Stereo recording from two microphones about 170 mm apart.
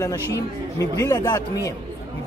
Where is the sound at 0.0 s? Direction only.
20° left (ahead or behind).